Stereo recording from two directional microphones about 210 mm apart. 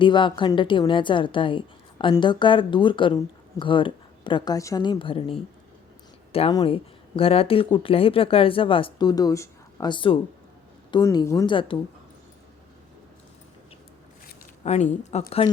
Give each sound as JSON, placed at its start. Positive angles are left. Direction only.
{"t": 0.0, "sound": "a woman's voice", "side_deg": 20}
{"t": 6.3, "sound": "a woman's voice", "side_deg": 25}
{"t": 14.6, "sound": "speech", "side_deg": 30}